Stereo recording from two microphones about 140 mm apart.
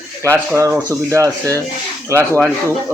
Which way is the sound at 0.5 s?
20° right (ahead or behind).